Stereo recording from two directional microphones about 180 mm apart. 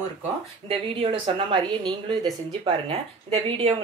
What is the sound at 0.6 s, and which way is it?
Speech, 30° right (ahead or behind).